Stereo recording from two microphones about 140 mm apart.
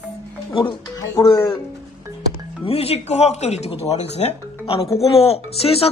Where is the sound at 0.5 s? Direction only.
35° left (ahead or behind).